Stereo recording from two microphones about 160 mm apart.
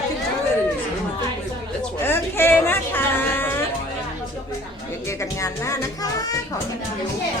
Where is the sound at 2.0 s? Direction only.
15° left (ahead or behind).